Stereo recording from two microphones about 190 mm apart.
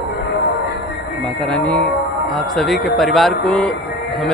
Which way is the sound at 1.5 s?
5° left (ahead or behind).